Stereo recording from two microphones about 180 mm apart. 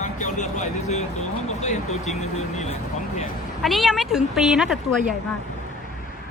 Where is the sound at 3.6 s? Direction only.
Centre (ahead or behind).